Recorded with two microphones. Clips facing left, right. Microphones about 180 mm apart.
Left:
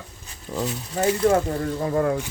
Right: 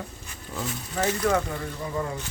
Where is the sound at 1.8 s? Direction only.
65° left (ahead or behind).